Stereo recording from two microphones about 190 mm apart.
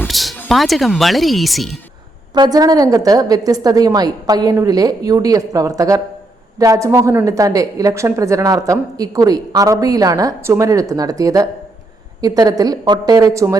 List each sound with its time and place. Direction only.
0.0 s music: centre (ahead or behind)
0.3 s speech: centre (ahead or behind)
2.3 s a woman's voice: 20° right (ahead or behind)